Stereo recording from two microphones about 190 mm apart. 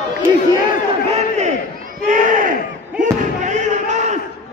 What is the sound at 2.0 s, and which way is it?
Crowd, 40° right (ahead or behind).